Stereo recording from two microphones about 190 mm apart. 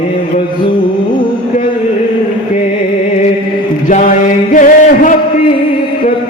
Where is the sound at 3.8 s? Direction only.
45° left (ahead or behind).